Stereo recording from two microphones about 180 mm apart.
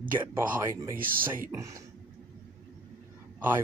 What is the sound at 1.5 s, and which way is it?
Speech, 15° right (ahead or behind).